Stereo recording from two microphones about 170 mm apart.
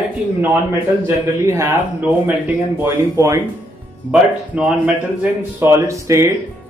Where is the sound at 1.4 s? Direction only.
15° right (ahead or behind).